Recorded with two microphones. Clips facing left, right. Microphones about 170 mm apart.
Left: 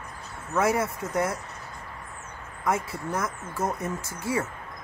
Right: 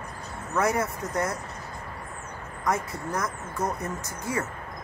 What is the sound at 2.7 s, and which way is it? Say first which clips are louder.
Speech: left 1 dB; 25° left (ahead or behind).